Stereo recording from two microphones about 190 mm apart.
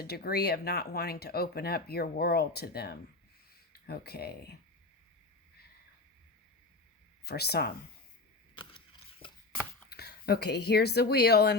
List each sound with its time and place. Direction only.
0.0 s speech: 55° left (ahead or behind)
7.3 s speech: 55° left (ahead or behind)
8.5 s a sound: 25° left (ahead or behind)
9.9 s speech: 55° left (ahead or behind)